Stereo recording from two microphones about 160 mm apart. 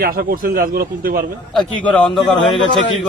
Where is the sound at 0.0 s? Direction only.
65° right (ahead or behind).